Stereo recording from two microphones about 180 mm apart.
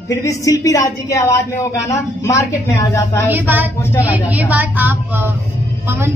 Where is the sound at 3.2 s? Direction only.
10° right (ahead or behind).